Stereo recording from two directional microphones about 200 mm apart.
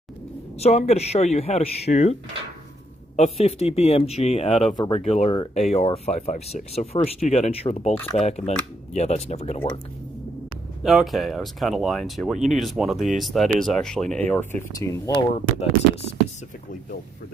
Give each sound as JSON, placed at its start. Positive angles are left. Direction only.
{"t": 0.6, "sound": "speech", "side_deg": 30}
{"t": 3.2, "sound": "speech", "side_deg": 30}
{"t": 10.8, "sound": "speech", "side_deg": 0}
{"t": 14.5, "sound": "speech", "side_deg": 15}